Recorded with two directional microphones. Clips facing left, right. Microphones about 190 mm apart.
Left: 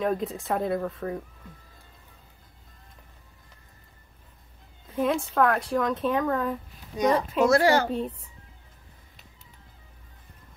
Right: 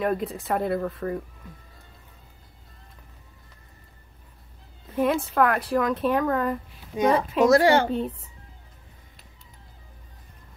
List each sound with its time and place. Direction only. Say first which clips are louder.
0.0 s speech: right 1 dB; centre (ahead or behind)
4.9 s speech: right 2 dB; 5° right (ahead or behind)
7.6 s a woman's voice: right 2 dB; 30° right (ahead or behind)